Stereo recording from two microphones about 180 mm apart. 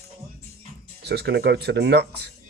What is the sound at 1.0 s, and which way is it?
Speech, 65° right (ahead or behind).